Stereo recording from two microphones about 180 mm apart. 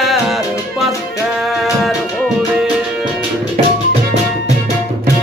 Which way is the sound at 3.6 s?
35° right (ahead or behind).